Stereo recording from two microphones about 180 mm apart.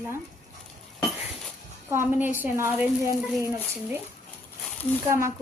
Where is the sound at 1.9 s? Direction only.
10° right (ahead or behind).